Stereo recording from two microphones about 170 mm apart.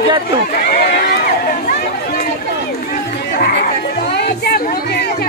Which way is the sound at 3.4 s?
70° left (ahead or behind).